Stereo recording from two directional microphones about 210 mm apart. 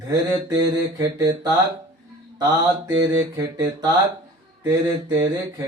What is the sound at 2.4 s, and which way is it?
Speech, 20° right (ahead or behind).